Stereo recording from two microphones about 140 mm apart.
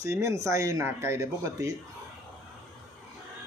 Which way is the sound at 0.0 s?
20° right (ahead or behind).